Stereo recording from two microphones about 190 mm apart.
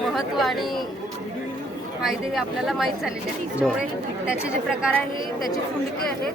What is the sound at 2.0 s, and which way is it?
Speech, centre (ahead or behind).